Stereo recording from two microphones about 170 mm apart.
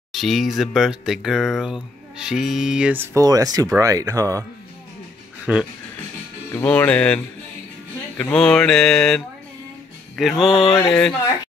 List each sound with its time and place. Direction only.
0.1 s speech: centre (ahead or behind); by 4.5 s 20° right (ahead or behind)
5.5 s speech: 10° right (ahead or behind)
6.5 s speech: 10° left (ahead or behind)
8.2 s speech: 5° left (ahead or behind)
10.5 s mantra: 30° left (ahead or behind)
10.9 s speech: 10° left (ahead or behind)